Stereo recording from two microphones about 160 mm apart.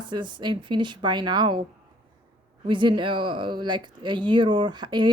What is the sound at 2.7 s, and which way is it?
Speech, 30° right (ahead or behind).